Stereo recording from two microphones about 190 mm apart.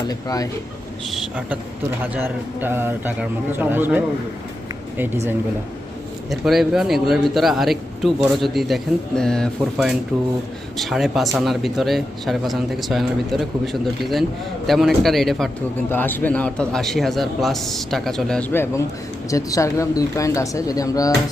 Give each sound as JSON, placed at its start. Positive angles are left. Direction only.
{"t": 0.1, "sound": "speech", "side_deg": 20}
{"t": 1.1, "sound": "a man's voice", "side_deg": -5}
{"t": 6.4, "sound": "a man's voice", "side_deg": 0}
{"t": 14.7, "sound": "a man's voice", "side_deg": 0}